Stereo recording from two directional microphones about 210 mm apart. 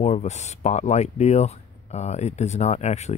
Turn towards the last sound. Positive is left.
turn(degrees=30)  # may be behind; listen again after turning